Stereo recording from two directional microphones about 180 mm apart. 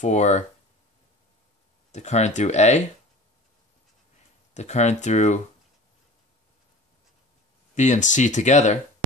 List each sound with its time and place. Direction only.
0.0 s speech: 40° left (ahead or behind)
1.9 s speech: 40° left (ahead or behind)
4.6 s speech: 40° left (ahead or behind)
7.7 s speech: 40° left (ahead or behind)